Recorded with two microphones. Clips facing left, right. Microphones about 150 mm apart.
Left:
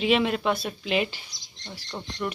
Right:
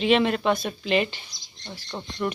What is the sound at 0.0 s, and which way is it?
Speech, 5° left (ahead or behind).